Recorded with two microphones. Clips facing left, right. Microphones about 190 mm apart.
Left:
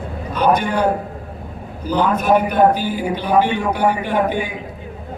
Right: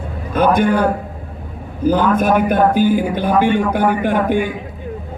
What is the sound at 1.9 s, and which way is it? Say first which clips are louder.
A man's voice: right 2 dB; 50° right (ahead or behind).